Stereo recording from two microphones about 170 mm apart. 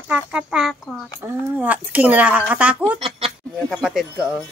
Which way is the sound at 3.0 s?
35° right (ahead or behind).